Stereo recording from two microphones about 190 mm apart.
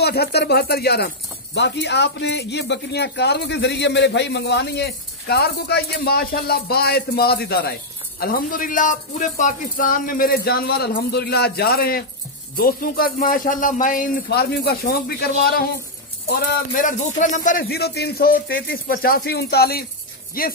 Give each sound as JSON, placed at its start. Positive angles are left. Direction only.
{"t": 0.0, "sound": "speech", "side_deg": 60}